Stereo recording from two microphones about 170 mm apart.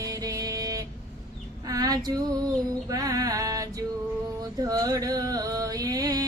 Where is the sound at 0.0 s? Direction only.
20° right (ahead or behind).